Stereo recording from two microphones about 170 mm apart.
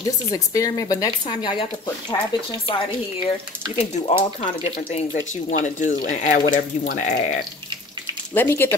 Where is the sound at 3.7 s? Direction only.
40° left (ahead or behind).